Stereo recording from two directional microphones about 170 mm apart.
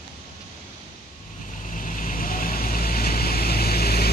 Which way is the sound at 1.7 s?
50° left (ahead or behind).